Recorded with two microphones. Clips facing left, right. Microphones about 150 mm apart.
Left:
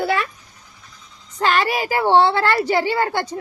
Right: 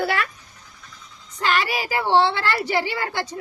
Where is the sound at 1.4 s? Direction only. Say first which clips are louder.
Left 4 dB; 50° left (ahead or behind).